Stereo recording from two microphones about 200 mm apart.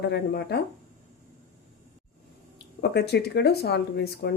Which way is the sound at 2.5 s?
55° left (ahead or behind).